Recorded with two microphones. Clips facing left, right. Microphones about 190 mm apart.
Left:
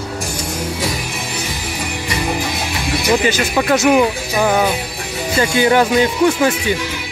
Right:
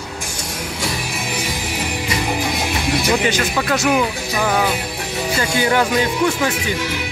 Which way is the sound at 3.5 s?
20° left (ahead or behind).